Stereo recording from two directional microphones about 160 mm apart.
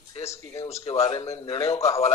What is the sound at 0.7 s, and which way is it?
Speech, 40° left (ahead or behind).